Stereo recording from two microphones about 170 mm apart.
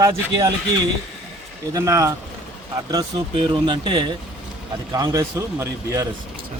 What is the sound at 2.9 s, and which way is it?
A man's voice, 30° right (ahead or behind).